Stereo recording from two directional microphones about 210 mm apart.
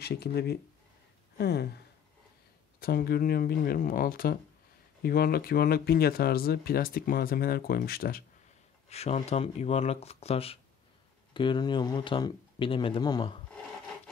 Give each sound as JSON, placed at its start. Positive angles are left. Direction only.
{"t": 0.0, "sound": "speech", "side_deg": 50}
{"t": 2.8, "sound": "speech", "side_deg": 45}
{"t": 8.8, "sound": "speech", "side_deg": 30}